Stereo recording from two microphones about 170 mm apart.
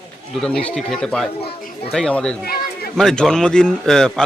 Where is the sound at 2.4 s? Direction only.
60° left (ahead or behind).